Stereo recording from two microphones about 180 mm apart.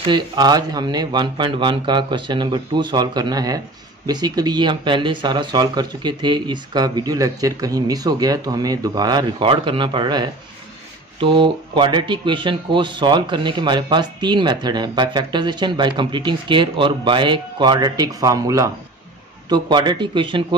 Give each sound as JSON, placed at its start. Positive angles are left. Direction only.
{"t": 0.1, "sound": "speech", "side_deg": -20}